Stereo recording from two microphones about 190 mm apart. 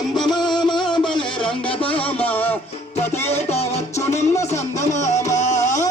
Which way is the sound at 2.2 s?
10° left (ahead or behind).